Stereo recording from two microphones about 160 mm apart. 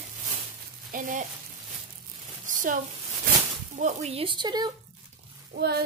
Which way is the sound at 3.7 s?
50° right (ahead or behind).